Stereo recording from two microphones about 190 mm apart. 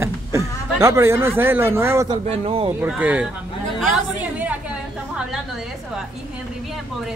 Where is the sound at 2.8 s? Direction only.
10° right (ahead or behind).